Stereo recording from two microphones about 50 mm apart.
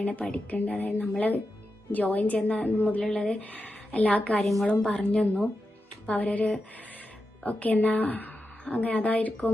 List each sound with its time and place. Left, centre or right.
0.0 s a woman's voice: left